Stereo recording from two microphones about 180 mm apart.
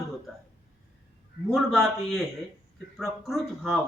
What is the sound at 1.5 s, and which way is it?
A man's voice, centre (ahead or behind).